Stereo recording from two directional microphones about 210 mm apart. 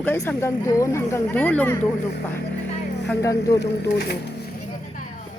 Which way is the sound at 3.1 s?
15° left (ahead or behind).